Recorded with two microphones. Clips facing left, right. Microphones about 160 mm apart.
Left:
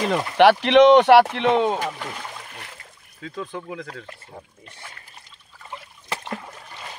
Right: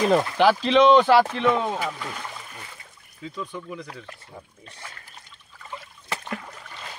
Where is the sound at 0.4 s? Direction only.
70° left (ahead or behind).